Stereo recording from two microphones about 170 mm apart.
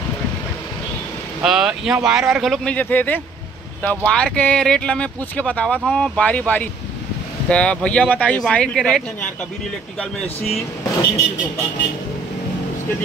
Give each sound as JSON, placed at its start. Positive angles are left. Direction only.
{"t": 1.4, "sound": "speech", "side_deg": -5}
{"t": 10.2, "sound": "speech", "side_deg": 40}